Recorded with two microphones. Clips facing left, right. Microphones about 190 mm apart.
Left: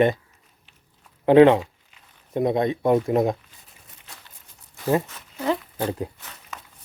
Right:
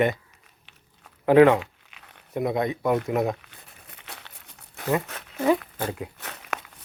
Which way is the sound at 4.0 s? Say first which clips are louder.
Right 5 dB; 70° right (ahead or behind).